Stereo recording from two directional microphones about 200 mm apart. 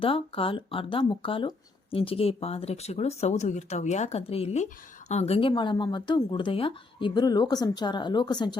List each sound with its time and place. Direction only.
0.0 s speech: 25° left (ahead or behind)